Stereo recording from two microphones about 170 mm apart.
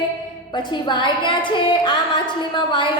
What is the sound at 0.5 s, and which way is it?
A woman's voice, 25° left (ahead or behind).